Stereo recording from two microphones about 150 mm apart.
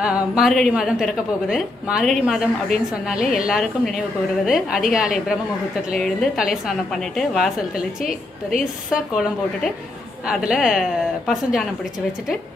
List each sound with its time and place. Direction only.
0.0 s a woman's voice: 5° right (ahead or behind)
8.0 s a woman's voice: 65° left (ahead or behind)
8.9 s a woman's voice: 5° right (ahead or behind)